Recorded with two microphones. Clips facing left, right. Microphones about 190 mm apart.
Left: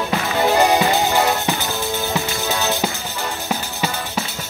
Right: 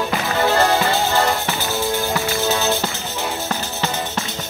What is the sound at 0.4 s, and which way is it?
Music, 15° left (ahead or behind).